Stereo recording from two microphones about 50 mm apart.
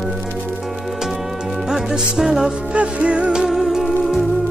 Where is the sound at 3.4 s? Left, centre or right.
Centre.